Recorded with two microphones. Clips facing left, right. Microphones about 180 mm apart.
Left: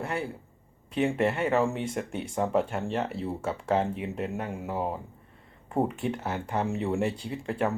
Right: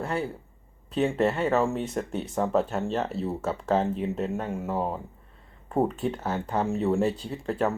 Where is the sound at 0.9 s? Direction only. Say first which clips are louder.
Right 2 dB; 15° left (ahead or behind).